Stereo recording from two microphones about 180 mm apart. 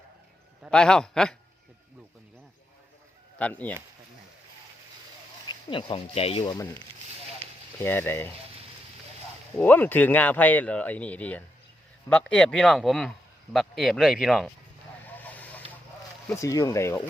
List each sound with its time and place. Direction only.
0.6 s speech: 5° left (ahead or behind)
3.3 s speech: 10° left (ahead or behind)
5.5 s speech: 30° left (ahead or behind)
7.9 s speech: 10° left (ahead or behind)
9.6 s speech: 10° left (ahead or behind)
15.0 s vehicle: 10° left (ahead or behind)
16.3 s speech: 15° left (ahead or behind)